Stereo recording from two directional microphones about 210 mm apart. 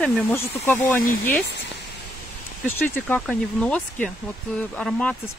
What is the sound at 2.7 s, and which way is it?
Speech, 10° left (ahead or behind).